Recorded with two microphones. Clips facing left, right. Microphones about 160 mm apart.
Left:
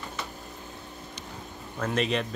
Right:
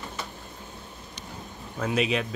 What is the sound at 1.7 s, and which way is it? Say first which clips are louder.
Speech: right 1 dB; 5° right (ahead or behind).